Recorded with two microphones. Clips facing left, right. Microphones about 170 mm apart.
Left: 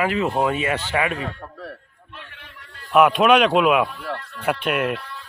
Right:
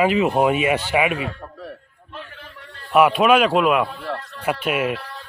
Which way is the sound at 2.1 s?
35° right (ahead or behind).